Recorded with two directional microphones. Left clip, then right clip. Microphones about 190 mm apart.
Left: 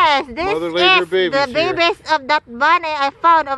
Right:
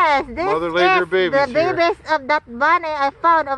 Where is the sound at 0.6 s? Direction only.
35° left (ahead or behind).